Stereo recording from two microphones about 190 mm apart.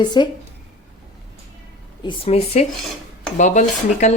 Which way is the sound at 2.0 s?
30° left (ahead or behind).